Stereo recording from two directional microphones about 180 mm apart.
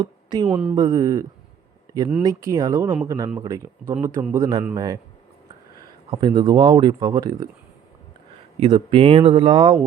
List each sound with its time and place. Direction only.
0.0 s a sound: 25° right (ahead or behind)
0.4 s speech: 5° right (ahead or behind)
0.8 s speech: 20° right (ahead or behind)
6.1 s speech: 25° right (ahead or behind)
8.5 s speech: 30° right (ahead or behind)